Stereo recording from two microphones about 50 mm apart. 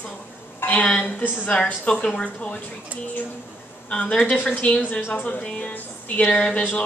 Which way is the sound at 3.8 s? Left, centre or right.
Left.